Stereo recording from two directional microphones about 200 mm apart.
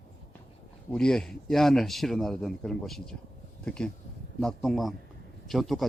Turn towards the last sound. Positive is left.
turn(degrees=0)  # may be behind; listen again after turning